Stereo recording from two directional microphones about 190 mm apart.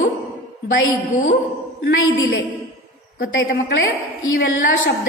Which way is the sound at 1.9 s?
80° left.